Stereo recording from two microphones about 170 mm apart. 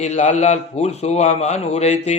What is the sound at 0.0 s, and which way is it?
A man's voice, 40° left (ahead or behind).